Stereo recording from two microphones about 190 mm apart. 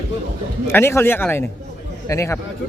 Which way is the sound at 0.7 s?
10° left (ahead or behind).